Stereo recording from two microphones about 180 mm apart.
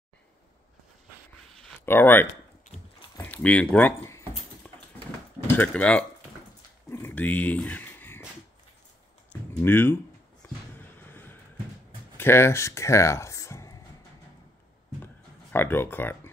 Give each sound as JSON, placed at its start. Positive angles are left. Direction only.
{"t": 1.5, "sound": "a sound", "side_deg": 10}
{"t": 3.2, "sound": "speech", "side_deg": 10}
{"t": 4.6, "sound": "dog", "side_deg": 10}
{"t": 5.5, "sound": "speech", "side_deg": 10}
{"t": 6.9, "sound": "dog", "side_deg": 10}
{"t": 9.5, "sound": "speech", "side_deg": 15}
{"t": 11.0, "sound": "a sound", "side_deg": 10}
{"t": 12.2, "sound": "speech", "side_deg": 15}
{"t": 15.5, "sound": "speech", "side_deg": 10}